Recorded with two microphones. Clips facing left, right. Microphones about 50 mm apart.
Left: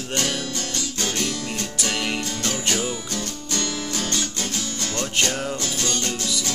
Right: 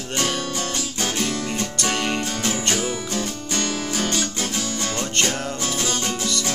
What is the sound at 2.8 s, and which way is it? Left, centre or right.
Music, right.